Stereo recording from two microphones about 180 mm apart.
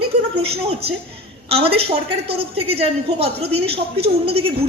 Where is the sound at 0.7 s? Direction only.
30° right (ahead or behind).